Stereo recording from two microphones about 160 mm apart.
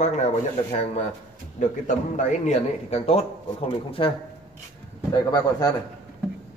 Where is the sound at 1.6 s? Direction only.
50° left (ahead or behind).